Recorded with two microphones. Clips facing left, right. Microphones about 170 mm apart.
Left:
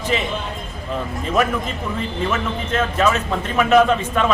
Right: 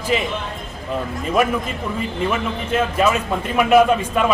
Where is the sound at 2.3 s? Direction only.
10° right (ahead or behind).